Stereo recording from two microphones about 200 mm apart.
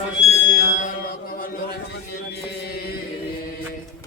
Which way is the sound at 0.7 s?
40° left (ahead or behind).